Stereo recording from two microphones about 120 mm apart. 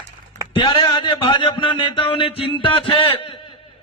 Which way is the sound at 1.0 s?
45° left (ahead or behind).